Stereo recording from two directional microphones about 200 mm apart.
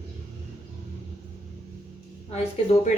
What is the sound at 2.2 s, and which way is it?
Speech, 30° left (ahead or behind).